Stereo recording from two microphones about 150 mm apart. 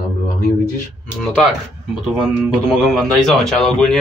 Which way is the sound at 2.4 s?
Centre (ahead or behind).